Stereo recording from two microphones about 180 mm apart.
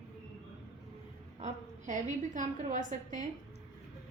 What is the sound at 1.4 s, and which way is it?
A woman's voice, 45° right (ahead or behind).